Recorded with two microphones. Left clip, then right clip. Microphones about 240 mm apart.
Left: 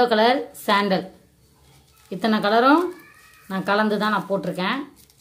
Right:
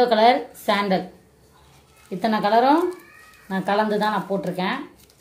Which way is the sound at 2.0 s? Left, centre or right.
Left.